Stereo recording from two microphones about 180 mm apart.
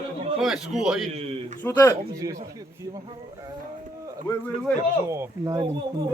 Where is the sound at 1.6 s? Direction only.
15° left (ahead or behind).